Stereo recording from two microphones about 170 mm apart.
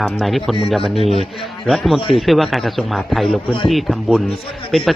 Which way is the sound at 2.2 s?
Centre (ahead or behind).